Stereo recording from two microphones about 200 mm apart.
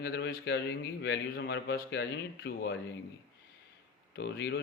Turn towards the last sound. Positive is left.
turn(degrees=55)  # may be behind; listen again after turning